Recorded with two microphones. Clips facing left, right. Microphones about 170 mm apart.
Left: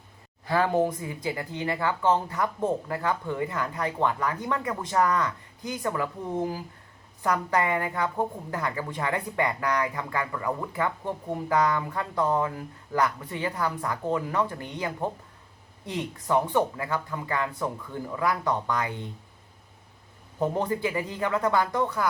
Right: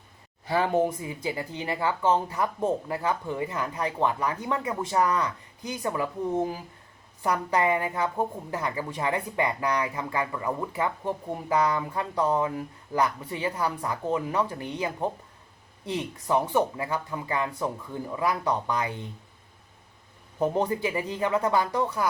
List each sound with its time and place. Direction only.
0.4 s speech: 20° right (ahead or behind)
7.2 s a woman's voice: 15° right (ahead or behind)
20.4 s a woman's voice: 20° right (ahead or behind)